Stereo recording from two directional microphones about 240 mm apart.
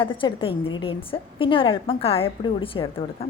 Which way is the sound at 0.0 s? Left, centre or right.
Left.